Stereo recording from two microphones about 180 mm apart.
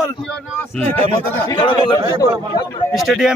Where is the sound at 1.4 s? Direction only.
25° left (ahead or behind).